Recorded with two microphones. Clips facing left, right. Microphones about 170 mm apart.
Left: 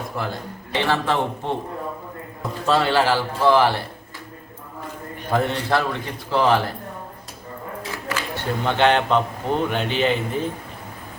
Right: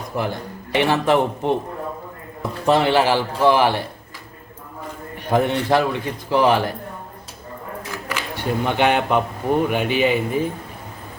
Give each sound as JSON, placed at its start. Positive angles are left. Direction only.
{"t": 0.2, "sound": "a man's voice", "side_deg": -15}
{"t": 2.6, "sound": "a man's voice", "side_deg": -15}
{"t": 5.3, "sound": "a man's voice", "side_deg": -15}
{"t": 8.6, "sound": "a man's voice", "side_deg": -15}